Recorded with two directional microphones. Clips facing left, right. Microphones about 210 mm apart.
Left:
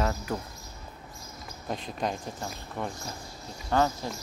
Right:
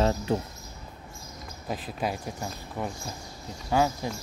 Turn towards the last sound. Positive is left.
turn(degrees=-10)  # may be behind; listen again after turning